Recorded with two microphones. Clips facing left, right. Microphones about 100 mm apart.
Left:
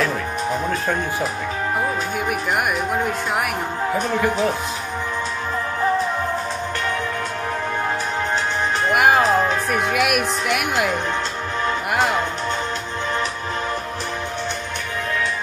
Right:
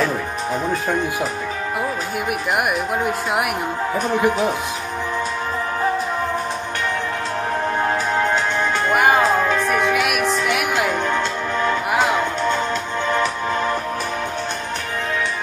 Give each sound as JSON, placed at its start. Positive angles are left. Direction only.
{"t": 4.1, "sound": "speech", "side_deg": -20}
{"t": 9.9, "sound": "music", "side_deg": 0}